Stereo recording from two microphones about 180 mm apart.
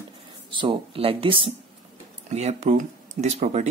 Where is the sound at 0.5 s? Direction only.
30° right (ahead or behind).